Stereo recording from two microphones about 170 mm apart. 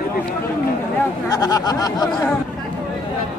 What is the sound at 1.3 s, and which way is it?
Speech, 20° left (ahead or behind).